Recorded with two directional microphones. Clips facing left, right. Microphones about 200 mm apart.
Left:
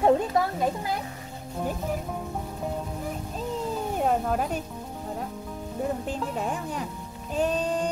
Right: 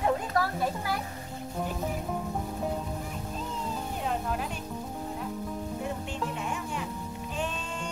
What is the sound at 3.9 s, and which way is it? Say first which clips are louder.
Music: left 8 dB; 50° left (ahead or behind).